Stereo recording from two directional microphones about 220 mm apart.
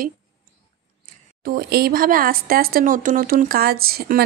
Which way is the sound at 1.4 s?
45° right (ahead or behind).